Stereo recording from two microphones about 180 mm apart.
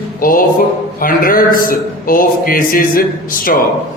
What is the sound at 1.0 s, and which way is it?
A man's voice, 50° left (ahead or behind).